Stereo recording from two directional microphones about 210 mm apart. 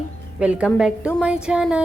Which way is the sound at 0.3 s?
5° right (ahead or behind).